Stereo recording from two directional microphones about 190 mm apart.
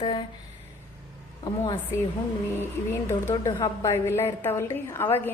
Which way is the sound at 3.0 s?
15° left (ahead or behind).